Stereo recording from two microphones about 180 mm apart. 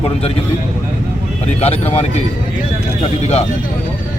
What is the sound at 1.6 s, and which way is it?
Speech, 35° left (ahead or behind).